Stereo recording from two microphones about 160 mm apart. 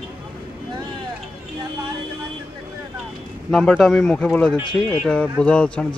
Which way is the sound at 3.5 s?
5° left (ahead or behind).